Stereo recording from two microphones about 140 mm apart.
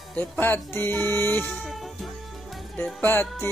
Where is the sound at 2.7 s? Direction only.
15° left (ahead or behind).